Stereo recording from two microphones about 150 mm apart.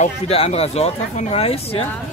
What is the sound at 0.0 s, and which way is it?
Speech, 45° left (ahead or behind).